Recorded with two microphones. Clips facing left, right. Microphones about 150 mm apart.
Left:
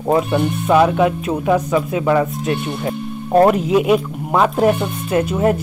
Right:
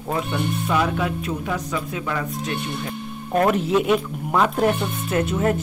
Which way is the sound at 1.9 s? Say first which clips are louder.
Left 11 dB; 20° left (ahead or behind).